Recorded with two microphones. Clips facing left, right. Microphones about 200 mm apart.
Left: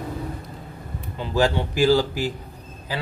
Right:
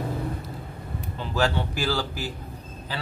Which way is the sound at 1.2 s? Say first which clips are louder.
Left 4 dB; 15° left (ahead or behind).